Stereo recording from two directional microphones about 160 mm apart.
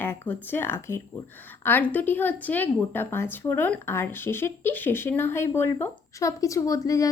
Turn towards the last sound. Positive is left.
turn(degrees=20)  # may be behind; listen again after turning